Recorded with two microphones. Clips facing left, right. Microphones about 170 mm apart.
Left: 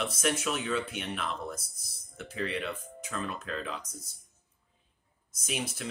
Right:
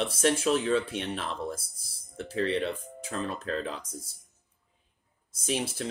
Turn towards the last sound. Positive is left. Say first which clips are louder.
# right 5 dB
turn(degrees=-30)  # may be behind; listen again after turning